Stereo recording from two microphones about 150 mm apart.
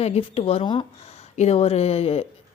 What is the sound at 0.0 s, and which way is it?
Speech, 40° left (ahead or behind).